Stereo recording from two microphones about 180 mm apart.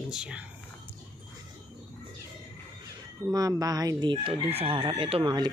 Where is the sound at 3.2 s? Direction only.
20° right (ahead or behind).